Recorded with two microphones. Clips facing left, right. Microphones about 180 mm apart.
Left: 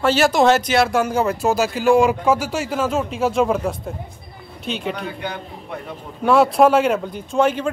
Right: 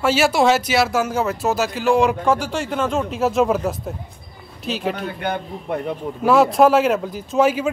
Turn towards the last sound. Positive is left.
turn(degrees=-5)  # may be behind; listen again after turning